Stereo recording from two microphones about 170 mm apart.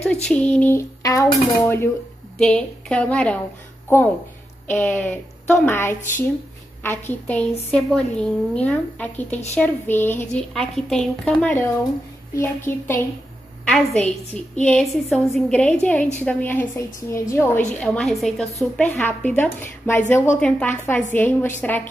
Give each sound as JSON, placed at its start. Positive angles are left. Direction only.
{"t": 0.0, "sound": "a woman's voice", "side_deg": 5}
{"t": 2.3, "sound": "a woman's voice", "side_deg": 5}
{"t": 4.6, "sound": "a woman's voice", "side_deg": 10}
{"t": 17.7, "sound": "a woman's voice", "side_deg": 5}